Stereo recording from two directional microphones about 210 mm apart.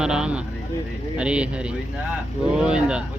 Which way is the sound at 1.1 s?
5° right (ahead or behind).